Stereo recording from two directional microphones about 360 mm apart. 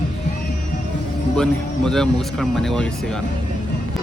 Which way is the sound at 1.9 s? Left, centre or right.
Centre.